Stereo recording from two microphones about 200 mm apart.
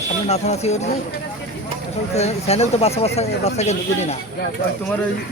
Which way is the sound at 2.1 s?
30° left (ahead or behind).